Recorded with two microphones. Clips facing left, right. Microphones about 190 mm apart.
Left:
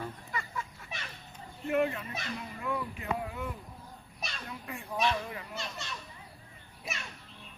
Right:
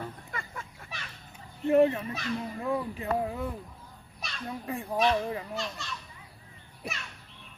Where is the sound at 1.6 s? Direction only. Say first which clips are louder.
Right 7 dB; 30° right (ahead or behind).